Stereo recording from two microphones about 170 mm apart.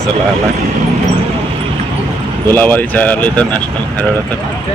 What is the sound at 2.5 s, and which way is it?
Speech, 10° left (ahead or behind).